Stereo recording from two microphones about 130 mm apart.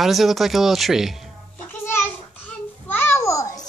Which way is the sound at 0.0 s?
Centre (ahead or behind).